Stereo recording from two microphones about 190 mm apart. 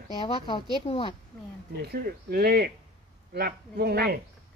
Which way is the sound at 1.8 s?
55° right (ahead or behind).